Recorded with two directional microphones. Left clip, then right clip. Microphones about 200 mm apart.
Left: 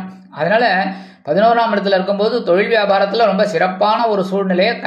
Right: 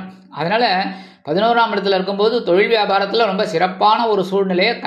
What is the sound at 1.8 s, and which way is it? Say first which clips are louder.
A man's voice: left 1 dB; 15° right (ahead or behind).